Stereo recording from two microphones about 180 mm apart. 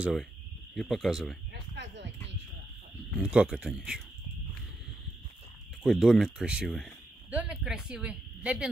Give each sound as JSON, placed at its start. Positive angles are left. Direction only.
{"t": 0.0, "sound": "speech", "side_deg": 0}
{"t": 1.5, "sound": "a sound", "side_deg": -75}
{"t": 3.1, "sound": "speech", "side_deg": -5}
{"t": 5.9, "sound": "speech", "side_deg": 0}